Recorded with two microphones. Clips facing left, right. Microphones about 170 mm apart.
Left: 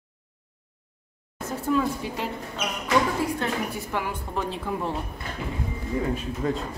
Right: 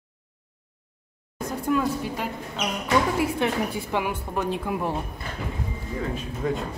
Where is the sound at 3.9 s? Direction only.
15° right (ahead or behind).